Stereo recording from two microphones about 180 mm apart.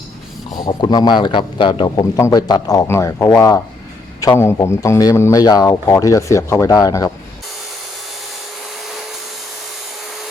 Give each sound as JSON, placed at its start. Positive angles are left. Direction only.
{"t": 0.5, "sound": "a man's voice", "side_deg": 25}